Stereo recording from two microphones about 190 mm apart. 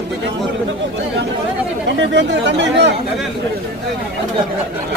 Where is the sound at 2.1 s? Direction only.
65° right (ahead or behind).